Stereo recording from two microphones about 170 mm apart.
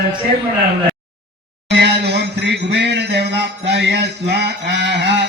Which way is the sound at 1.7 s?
90° right.